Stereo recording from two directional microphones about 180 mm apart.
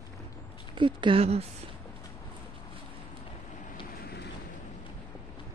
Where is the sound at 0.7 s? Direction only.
25° right (ahead or behind).